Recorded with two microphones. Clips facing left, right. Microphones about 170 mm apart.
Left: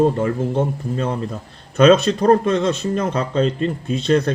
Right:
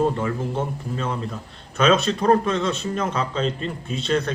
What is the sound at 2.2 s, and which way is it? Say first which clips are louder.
Speech: left 4 dB; 40° left (ahead or behind).